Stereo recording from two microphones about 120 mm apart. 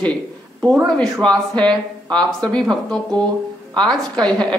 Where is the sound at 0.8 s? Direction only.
5° left (ahead or behind).